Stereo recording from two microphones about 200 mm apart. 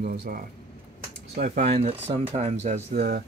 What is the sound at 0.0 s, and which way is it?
Speech, 50° right (ahead or behind).